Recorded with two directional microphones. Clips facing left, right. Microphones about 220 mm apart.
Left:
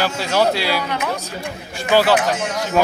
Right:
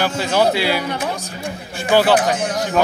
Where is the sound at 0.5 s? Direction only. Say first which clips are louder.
Right 2 dB; 55° right (ahead or behind).